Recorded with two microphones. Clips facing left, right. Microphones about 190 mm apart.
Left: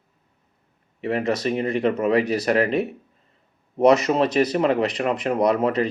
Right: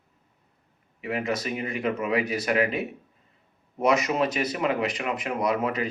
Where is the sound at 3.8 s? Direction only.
35° left (ahead or behind).